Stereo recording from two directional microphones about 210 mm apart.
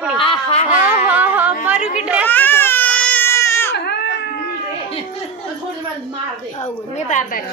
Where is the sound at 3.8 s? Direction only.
50° left (ahead or behind).